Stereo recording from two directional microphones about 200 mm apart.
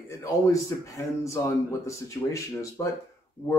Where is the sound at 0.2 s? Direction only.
15° left (ahead or behind).